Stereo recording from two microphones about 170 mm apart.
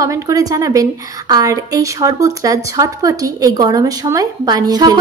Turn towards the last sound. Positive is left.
turn(degrees=-20)  # may be behind; listen again after turning